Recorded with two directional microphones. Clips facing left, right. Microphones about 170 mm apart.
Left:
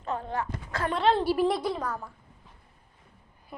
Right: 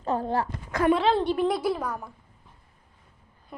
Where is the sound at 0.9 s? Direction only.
Centre (ahead or behind).